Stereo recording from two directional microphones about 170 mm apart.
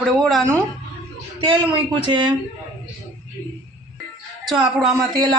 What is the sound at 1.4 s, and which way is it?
Speech, 30° right (ahead or behind).